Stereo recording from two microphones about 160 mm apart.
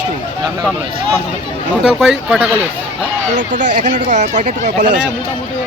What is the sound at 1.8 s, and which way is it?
Speech, 5° right (ahead or behind).